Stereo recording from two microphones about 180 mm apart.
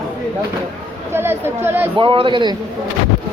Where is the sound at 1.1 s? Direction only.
15° right (ahead or behind).